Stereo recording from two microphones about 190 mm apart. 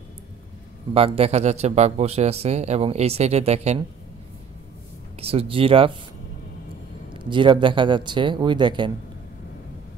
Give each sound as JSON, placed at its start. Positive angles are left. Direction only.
{"t": 0.9, "sound": "speech", "side_deg": -30}
{"t": 5.2, "sound": "a man's voice", "side_deg": -30}
{"t": 7.2, "sound": "a man's voice", "side_deg": -25}